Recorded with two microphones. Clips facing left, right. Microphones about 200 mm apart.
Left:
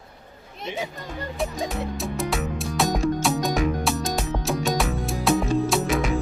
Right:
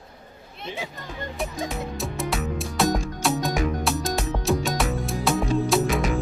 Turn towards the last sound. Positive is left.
turn(degrees=0)  # may be behind; listen again after turning